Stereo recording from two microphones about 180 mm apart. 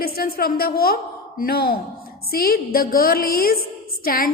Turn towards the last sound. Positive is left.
turn(degrees=55)  # may be behind; listen again after turning